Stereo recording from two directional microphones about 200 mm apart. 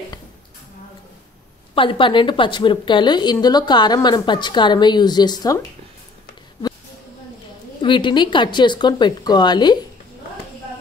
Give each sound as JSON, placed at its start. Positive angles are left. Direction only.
{"t": 1.8, "sound": "a woman's voice", "side_deg": 25}
{"t": 7.8, "sound": "a woman's voice", "side_deg": 25}